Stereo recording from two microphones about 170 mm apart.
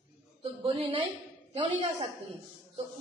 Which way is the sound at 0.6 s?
30° right (ahead or behind).